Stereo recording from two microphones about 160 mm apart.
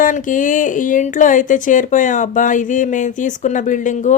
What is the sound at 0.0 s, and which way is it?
Speech, 55° left (ahead or behind).